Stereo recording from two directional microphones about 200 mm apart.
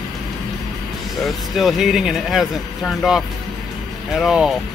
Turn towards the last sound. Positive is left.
turn(degrees=0)  # may be behind; listen again after turning